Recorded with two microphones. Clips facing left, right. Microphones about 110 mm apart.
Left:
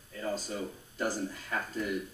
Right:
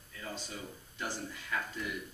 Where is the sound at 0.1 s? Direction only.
40° left (ahead or behind).